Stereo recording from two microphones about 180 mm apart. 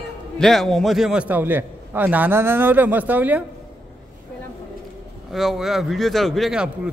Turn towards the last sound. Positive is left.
turn(degrees=-5)  # may be behind; listen again after turning